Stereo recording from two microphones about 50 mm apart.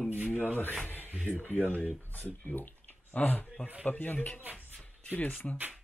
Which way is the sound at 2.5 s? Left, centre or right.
Left.